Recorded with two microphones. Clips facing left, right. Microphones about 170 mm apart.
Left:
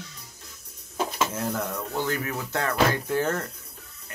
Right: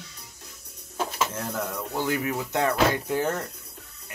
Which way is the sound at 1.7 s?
10° right (ahead or behind).